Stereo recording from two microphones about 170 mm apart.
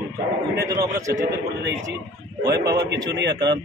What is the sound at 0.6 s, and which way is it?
Speech, 20° right (ahead or behind).